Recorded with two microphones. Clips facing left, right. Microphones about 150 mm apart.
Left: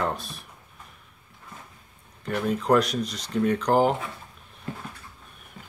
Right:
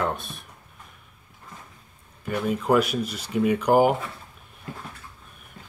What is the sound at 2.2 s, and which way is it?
Speech, 5° right (ahead or behind).